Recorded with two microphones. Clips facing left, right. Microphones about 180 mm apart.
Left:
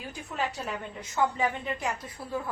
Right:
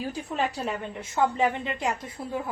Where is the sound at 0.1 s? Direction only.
35° right (ahead or behind).